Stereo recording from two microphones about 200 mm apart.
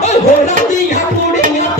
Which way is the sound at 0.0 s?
35° left (ahead or behind).